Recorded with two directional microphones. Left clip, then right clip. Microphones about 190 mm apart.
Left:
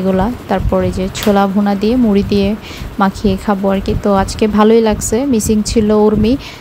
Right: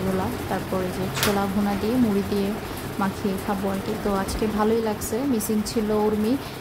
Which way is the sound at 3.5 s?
40° left (ahead or behind).